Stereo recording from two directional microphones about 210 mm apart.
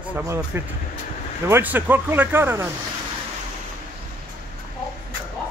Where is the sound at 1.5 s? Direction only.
10° right (ahead or behind).